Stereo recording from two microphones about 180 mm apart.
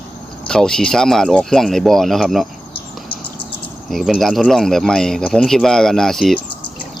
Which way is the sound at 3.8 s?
Centre (ahead or behind).